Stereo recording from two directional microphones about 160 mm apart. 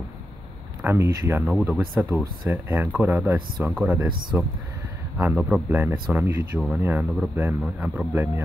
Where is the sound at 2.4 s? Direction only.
15° right (ahead or behind).